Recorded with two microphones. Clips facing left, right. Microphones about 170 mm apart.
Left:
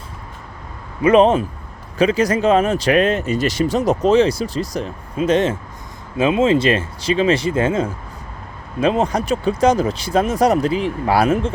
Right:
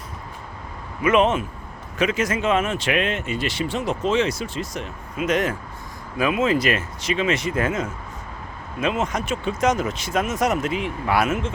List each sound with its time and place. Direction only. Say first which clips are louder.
1.0 s speech: left 6 dB; 35° left (ahead or behind)